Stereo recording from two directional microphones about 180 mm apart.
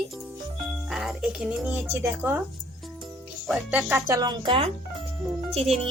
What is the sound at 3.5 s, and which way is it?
Speech, 10° right (ahead or behind).